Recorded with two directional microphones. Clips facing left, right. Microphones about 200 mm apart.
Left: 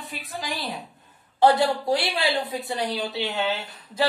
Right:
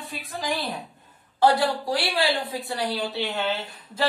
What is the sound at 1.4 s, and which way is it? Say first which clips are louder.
A woman's voice: left 2 dB; 20° left (ahead or behind).